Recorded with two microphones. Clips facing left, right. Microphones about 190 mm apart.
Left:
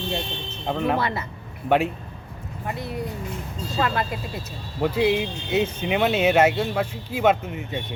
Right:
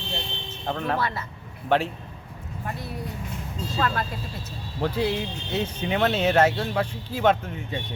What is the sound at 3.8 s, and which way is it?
Speech, 15° left (ahead or behind).